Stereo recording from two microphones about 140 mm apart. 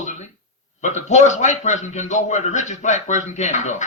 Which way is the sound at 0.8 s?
55° left (ahead or behind).